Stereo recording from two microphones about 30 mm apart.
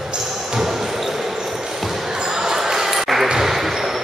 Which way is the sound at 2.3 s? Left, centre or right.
Centre.